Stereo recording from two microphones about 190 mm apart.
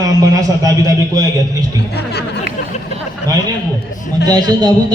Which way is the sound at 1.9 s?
60° left (ahead or behind).